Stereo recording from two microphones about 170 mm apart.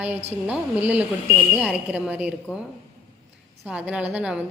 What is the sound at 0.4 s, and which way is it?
A woman's voice, 10° right (ahead or behind).